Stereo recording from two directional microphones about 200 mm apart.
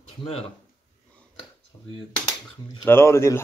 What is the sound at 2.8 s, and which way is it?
Speech, 10° left (ahead or behind).